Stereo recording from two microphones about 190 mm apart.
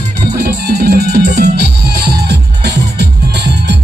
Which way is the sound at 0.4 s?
55° right (ahead or behind).